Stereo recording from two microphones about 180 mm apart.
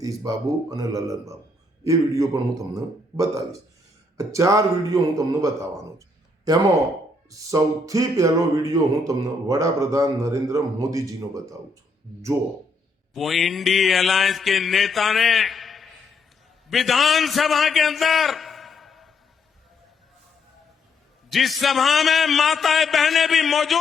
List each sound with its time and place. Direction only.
0.0 s a sound: 20° right (ahead or behind)
1.8 s a man's voice: 15° right (ahead or behind)
7.3 s a sound: 20° right (ahead or behind)
13.1 s mantra: centre (ahead or behind)
16.6 s a man's voice: centre (ahead or behind)
21.2 s mantra: centre (ahead or behind)